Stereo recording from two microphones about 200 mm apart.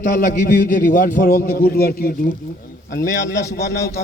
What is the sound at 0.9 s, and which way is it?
A man's voice, 45° left (ahead or behind).